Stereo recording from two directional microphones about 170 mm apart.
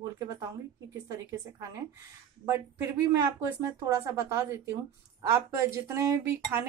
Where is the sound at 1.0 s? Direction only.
20° right (ahead or behind).